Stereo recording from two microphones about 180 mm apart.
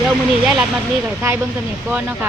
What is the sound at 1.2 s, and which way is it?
Speech, 15° right (ahead or behind).